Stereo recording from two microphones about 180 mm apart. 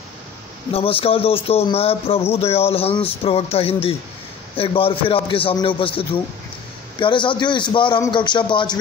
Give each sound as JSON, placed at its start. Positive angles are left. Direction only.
{"t": 0.7, "sound": "a man's voice", "side_deg": 30}